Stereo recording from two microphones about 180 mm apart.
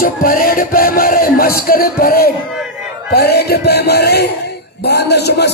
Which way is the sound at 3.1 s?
65° left (ahead or behind).